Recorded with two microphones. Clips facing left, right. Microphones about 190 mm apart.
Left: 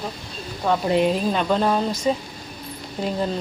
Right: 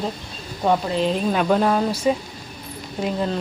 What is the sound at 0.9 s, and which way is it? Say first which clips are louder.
Speech: left 3 dB; 10° left (ahead or behind).